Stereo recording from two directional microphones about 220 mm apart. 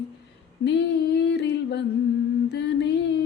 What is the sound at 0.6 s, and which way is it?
Female singing, 50° left (ahead or behind).